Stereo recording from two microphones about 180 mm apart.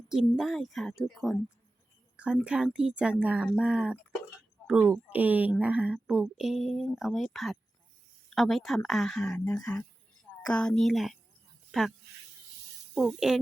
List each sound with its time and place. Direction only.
0.1 s a woman's voice: centre (ahead or behind)
9.3 s speech: 15° left (ahead or behind)
10.4 s a woman's voice: 5° left (ahead or behind)